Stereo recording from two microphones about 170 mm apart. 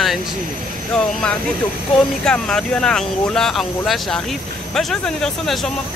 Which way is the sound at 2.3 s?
5° left (ahead or behind).